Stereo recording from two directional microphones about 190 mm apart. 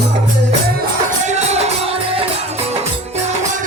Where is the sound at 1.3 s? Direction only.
35° right (ahead or behind).